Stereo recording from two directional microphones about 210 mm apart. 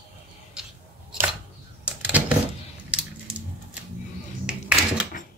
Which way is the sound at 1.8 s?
5° right (ahead or behind).